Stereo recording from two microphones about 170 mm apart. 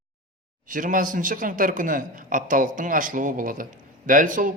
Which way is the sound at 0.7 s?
50° right (ahead or behind).